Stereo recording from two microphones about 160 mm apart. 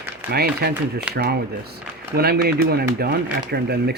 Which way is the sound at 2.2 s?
75° right (ahead or behind).